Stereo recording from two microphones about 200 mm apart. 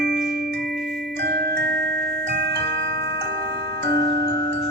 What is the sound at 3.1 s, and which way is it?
Glockenspiel, 55° right (ahead or behind).